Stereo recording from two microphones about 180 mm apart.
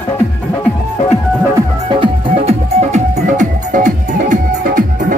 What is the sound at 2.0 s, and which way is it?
Music, 35° right (ahead or behind).